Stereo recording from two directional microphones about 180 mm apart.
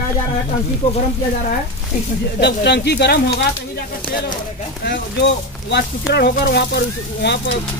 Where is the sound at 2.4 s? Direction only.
70° left (ahead or behind).